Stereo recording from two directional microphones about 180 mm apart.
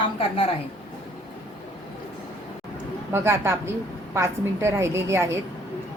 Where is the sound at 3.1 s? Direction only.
15° right (ahead or behind).